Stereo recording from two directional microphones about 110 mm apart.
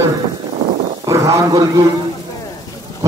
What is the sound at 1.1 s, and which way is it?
Speech, 30° right (ahead or behind).